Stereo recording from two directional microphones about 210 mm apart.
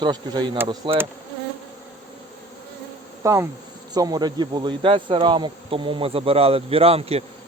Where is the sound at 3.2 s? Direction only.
15° right (ahead or behind).